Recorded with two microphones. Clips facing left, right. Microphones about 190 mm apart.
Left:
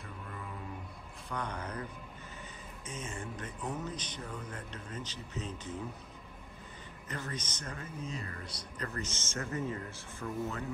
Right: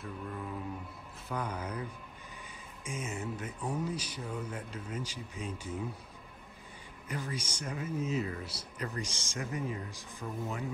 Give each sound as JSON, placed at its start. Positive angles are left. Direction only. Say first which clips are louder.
{"t": 1.3, "sound": "speech", "louder": "right 2 dB", "side_deg": -10}
{"t": 7.1, "sound": "speech", "louder": "right 2 dB", "side_deg": -10}